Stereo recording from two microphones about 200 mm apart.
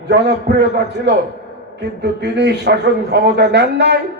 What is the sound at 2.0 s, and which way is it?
A man's voice, 60° right (ahead or behind).